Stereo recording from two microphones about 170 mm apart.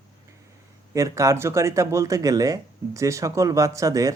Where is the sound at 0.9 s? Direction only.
20° right (ahead or behind).